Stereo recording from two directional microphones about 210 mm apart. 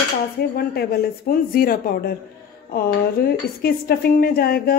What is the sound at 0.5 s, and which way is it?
Speech, 45° left (ahead or behind).